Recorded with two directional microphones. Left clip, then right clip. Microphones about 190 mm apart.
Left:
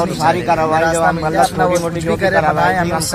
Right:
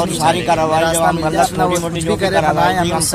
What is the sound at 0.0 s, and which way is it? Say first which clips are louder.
Speech: even; centre (ahead or behind).